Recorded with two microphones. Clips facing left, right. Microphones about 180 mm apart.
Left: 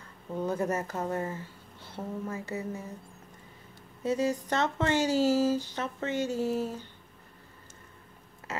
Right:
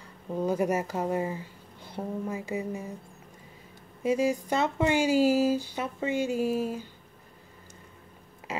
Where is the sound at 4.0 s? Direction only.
10° right (ahead or behind).